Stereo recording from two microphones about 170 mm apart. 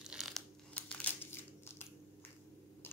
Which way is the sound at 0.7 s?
10° left (ahead or behind).